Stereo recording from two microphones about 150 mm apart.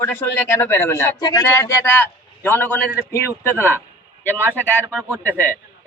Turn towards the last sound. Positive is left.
turn(degrees=10)  # may be behind; listen again after turning